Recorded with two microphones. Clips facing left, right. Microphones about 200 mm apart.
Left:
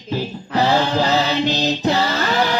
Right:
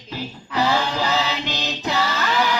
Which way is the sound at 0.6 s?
45° left (ahead or behind).